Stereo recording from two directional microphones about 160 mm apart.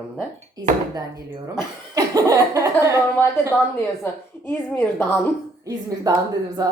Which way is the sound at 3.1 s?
15° left (ahead or behind).